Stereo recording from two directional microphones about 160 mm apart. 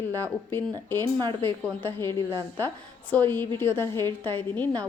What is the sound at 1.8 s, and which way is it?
A woman's voice, 15° left (ahead or behind).